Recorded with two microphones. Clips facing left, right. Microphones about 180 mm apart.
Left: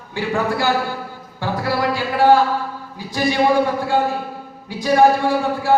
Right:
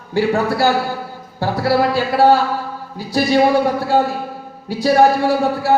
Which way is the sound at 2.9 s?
35° right (ahead or behind).